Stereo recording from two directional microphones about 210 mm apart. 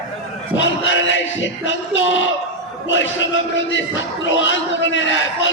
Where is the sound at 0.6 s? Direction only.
60° left (ahead or behind).